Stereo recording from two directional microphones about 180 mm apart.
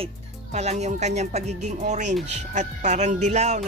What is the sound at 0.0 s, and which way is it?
Music, 40° right (ahead or behind).